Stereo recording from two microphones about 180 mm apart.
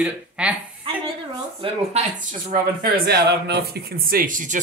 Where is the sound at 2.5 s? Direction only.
60° right (ahead or behind).